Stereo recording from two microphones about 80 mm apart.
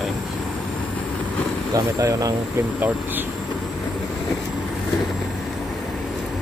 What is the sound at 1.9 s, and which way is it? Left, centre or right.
Speech, right.